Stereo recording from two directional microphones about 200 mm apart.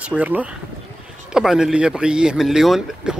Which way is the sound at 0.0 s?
5° right (ahead or behind).